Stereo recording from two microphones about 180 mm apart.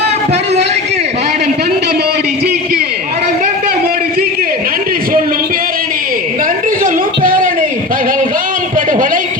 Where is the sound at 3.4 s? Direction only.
55° right (ahead or behind).